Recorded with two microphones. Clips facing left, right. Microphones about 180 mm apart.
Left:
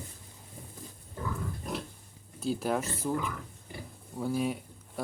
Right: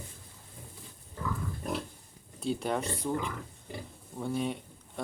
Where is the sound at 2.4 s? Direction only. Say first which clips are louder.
Left 1 dB; centre (ahead or behind).